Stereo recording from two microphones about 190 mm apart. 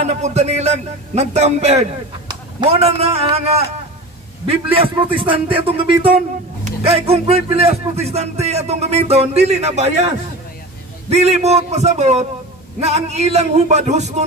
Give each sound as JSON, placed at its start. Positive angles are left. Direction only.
{"t": 0.0, "sound": "a man's voice", "side_deg": -35}